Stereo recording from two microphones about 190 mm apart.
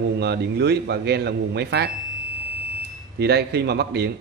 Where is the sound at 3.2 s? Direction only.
60° right (ahead or behind).